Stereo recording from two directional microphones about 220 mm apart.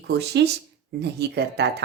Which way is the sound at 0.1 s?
50° right (ahead or behind).